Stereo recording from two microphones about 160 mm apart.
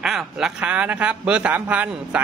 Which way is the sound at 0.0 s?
Centre (ahead or behind).